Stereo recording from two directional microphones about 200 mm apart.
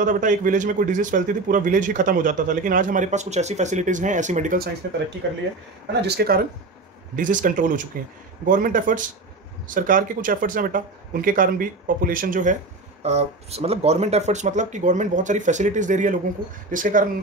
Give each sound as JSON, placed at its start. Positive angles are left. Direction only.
{"t": 0.0, "sound": "speech", "side_deg": -40}
{"t": 5.2, "sound": "speech", "side_deg": -60}
{"t": 7.2, "sound": "speech", "side_deg": -40}
{"t": 13.0, "sound": "speech", "side_deg": -30}